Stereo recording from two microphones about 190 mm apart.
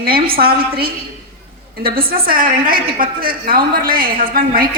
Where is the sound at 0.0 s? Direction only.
50° right (ahead or behind).